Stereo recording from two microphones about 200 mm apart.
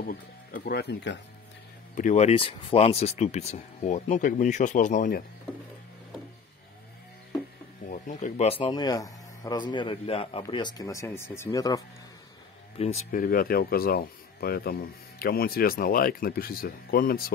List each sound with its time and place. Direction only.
0.0 s speech: 45° left (ahead or behind)
2.0 s speech: 35° left (ahead or behind)
7.9 s speech: 35° left (ahead or behind); by 11.8 s 15° left (ahead or behind)
12.7 s speech: 30° left (ahead or behind); by 17.3 s 45° left (ahead or behind)